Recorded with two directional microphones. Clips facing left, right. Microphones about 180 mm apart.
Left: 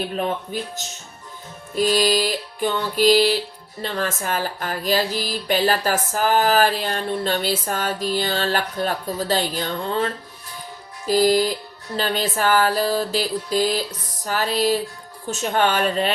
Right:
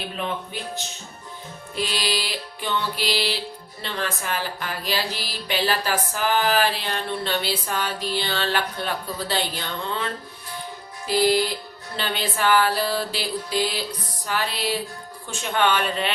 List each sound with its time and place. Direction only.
0.2 s music: 45° left (ahead or behind)
1.7 s music: 45° left (ahead or behind)
11.0 s speech: 40° left (ahead or behind)
11.9 s music: 40° left (ahead or behind)
14.3 s speech: 40° left (ahead or behind)